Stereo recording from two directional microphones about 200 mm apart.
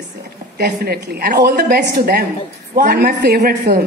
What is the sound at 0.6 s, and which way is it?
A woman's voice, 50° right (ahead or behind).